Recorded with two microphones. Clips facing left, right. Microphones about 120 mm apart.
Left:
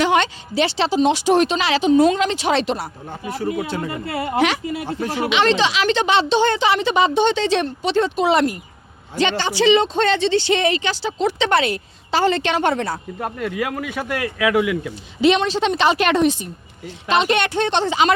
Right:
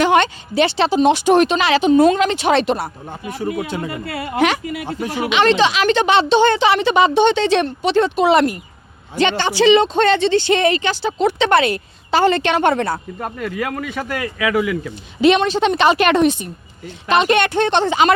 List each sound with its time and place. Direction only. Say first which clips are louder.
0.0 s a woman's voice: right 3 dB; 50° right (ahead or behind)
3.1 s speech: left 2 dB; 15° right (ahead or behind)
3.8 s speech: left 1 dB; 25° left (ahead or behind)
4.4 s speech: right 2 dB; 50° right (ahead or behind)
4.6 s speech: even; 30° left (ahead or behind)
4.9 s speech: right 1 dB; 15° right (ahead or behind)
5.3 s a woman's voice: right 4 dB; 50° right (ahead or behind)
13.1 s speech: even; centre (ahead or behind)
15.2 s a woman's voice: right 3 dB; 55° right (ahead or behind)